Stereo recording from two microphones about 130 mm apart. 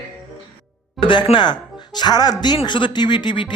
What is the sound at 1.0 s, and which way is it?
Speech, 40° left (ahead or behind).